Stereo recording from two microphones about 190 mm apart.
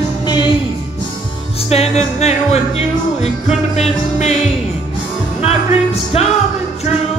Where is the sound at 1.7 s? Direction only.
35° left (ahead or behind).